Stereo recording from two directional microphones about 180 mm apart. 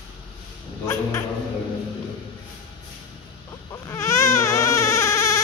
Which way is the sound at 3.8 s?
15° left (ahead or behind).